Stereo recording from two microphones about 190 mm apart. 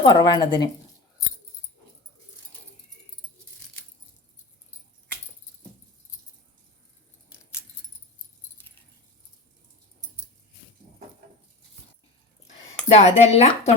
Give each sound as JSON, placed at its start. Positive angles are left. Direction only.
{"t": 0.0, "sound": "speech", "side_deg": 25}
{"t": 12.9, "sound": "speech", "side_deg": 35}